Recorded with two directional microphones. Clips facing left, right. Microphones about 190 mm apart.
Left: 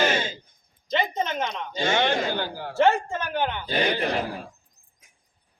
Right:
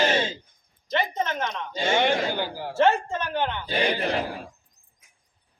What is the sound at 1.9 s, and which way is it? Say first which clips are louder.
Speech: right 2 dB; 10° right (ahead or behind).